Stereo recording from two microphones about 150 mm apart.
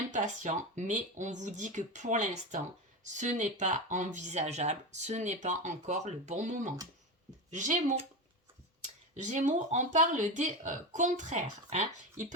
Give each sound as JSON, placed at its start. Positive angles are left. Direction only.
{"t": 0.1, "sound": "speech", "side_deg": -55}
{"t": 9.2, "sound": "speech", "side_deg": -55}